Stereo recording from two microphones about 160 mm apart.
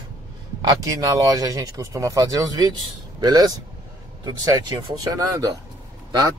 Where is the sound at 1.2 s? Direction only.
20° right (ahead or behind).